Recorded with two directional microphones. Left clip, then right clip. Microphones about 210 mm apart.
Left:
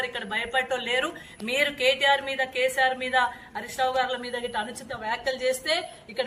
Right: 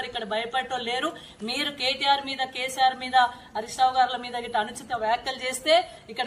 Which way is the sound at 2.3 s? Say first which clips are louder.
Left 3 dB; 20° left (ahead or behind).